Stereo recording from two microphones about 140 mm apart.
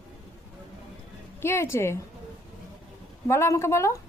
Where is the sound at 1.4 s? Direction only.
20° left (ahead or behind).